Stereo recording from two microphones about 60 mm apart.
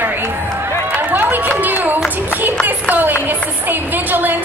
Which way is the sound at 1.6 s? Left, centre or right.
Right.